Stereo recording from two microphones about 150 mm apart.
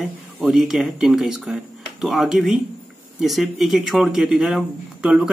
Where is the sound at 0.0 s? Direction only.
Centre (ahead or behind).